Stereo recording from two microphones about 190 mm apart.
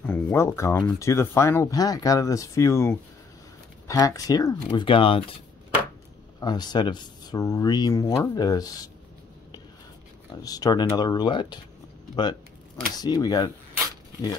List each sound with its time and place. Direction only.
0.0 s speech: 10° left (ahead or behind); by 5.4 s 30° left (ahead or behind)
6.4 s speech: 20° left (ahead or behind)
10.4 s speech: 20° left (ahead or behind)
12.9 s speech: 20° left (ahead or behind)